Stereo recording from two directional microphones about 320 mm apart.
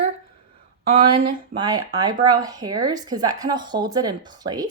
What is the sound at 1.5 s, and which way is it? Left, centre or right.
Speech, centre.